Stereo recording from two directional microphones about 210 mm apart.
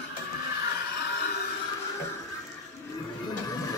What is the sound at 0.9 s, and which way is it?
Music, 50° left (ahead or behind).